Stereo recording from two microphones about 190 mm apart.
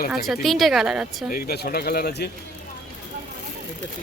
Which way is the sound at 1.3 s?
55° left (ahead or behind).